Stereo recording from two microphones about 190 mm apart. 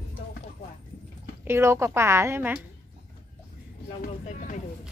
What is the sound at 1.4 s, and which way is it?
A woman's voice, 15° right (ahead or behind).